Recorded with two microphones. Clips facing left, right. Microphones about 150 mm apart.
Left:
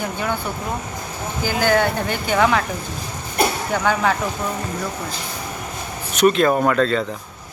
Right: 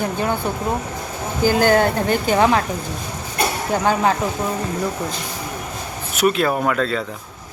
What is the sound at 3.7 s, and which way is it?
Speech, 30° right (ahead or behind).